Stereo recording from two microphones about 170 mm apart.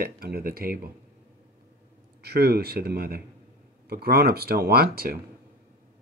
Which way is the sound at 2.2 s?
70° right (ahead or behind).